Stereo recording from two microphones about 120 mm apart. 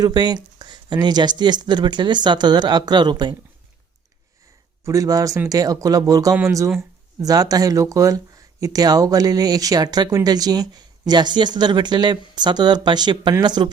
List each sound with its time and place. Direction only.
0.0 s speech: 35° right (ahead or behind)
4.9 s speech: 30° right (ahead or behind)